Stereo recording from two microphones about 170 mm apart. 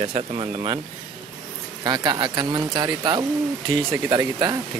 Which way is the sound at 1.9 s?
25° right (ahead or behind).